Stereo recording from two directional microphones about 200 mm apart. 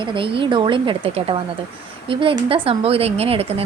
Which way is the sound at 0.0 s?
25° right (ahead or behind).